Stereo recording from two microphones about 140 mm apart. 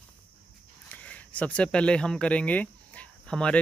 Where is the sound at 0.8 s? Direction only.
10° left (ahead or behind).